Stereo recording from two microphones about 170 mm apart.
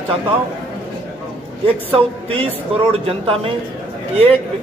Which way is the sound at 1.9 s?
35° right (ahead or behind).